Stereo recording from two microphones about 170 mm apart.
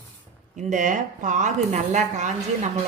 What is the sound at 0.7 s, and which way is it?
A woman's voice, 50° right (ahead or behind).